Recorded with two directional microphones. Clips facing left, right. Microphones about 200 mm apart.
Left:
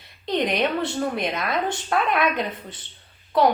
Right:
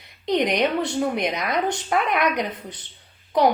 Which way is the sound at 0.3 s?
15° right (ahead or behind).